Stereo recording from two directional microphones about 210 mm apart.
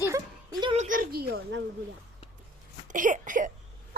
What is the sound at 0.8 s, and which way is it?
Speech, 40° right (ahead or behind).